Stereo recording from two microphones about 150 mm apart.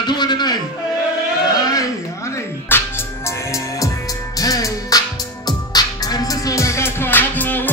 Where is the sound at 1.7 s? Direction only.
20° left (ahead or behind).